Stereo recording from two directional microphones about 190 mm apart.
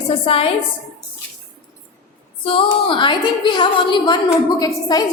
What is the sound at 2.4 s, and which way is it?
A woman's voice, 25° left (ahead or behind).